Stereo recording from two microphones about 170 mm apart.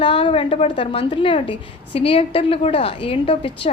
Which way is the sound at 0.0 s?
30° left (ahead or behind).